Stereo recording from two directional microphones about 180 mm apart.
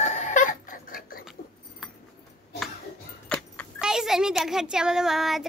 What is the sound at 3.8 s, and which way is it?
A child's voice, 5° right (ahead or behind).